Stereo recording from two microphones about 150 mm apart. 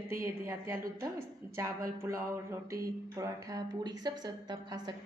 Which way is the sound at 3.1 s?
25° right (ahead or behind).